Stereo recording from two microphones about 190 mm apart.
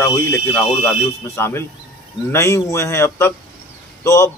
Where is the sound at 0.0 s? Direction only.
15° left (ahead or behind).